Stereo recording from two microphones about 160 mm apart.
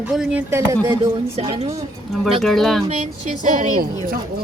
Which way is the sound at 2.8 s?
45° right (ahead or behind).